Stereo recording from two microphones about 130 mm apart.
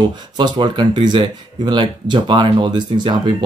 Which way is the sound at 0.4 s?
35° right (ahead or behind).